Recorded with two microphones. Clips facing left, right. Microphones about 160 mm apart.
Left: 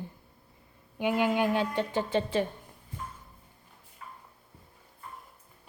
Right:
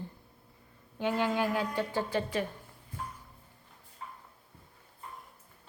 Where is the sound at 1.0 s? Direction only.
15° left (ahead or behind).